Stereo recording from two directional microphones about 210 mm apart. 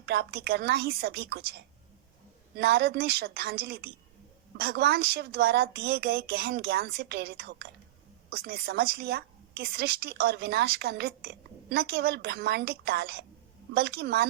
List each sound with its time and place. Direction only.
0.0 s a woman's voice: 50° right (ahead or behind)